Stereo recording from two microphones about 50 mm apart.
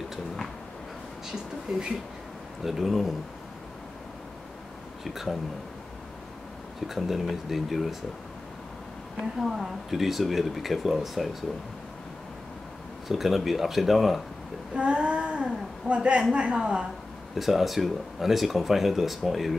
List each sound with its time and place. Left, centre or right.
1.7 s speech: centre
5.0 s speech: centre
6.9 s speech: centre
9.4 s speech: centre
13.1 s speech: centre
14.7 s a woman's voice: right
17.4 s speech: centre